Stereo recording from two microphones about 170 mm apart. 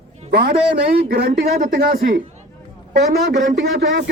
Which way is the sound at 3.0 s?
80° right.